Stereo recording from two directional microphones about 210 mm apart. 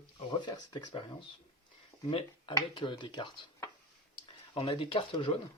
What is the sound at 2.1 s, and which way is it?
Speech, 25° left (ahead or behind).